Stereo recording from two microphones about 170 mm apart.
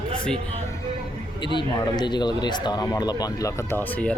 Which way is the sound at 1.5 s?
25° left (ahead or behind).